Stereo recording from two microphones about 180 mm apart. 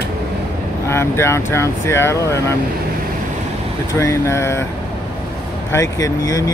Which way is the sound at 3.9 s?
15° left (ahead or behind).